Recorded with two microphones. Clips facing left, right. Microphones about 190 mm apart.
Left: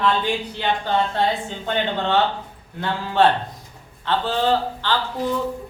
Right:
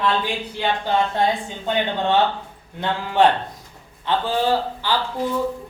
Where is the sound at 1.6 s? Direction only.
15° right (ahead or behind).